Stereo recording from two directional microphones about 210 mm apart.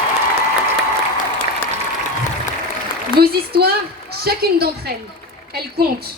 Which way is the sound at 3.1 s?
45° right (ahead or behind).